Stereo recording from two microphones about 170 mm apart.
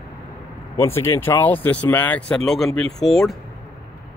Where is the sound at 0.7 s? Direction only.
15° left (ahead or behind).